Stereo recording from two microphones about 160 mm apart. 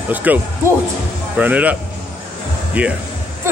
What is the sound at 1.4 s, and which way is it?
A man's voice, 10° right (ahead or behind).